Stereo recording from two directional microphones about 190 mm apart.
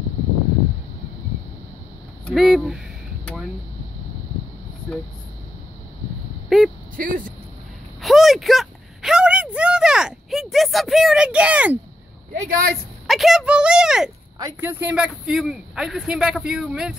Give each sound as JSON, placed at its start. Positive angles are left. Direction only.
{"t": 2.2, "sound": "speech", "side_deg": 0}
{"t": 6.5, "sound": "speech", "side_deg": 0}
{"t": 7.0, "sound": "speech", "side_deg": -45}
{"t": 8.0, "sound": "a sound", "side_deg": 0}
{"t": 12.4, "sound": "speech", "side_deg": -50}
{"t": 13.0, "sound": "speech", "side_deg": 0}